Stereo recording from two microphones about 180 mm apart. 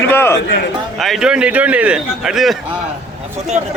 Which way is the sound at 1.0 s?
Centre (ahead or behind).